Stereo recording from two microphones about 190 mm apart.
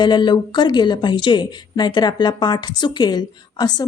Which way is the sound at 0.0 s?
25° left (ahead or behind).